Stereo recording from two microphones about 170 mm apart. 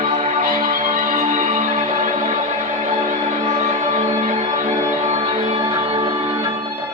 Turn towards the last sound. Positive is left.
turn(degrees=-30)  # may be behind; listen again after turning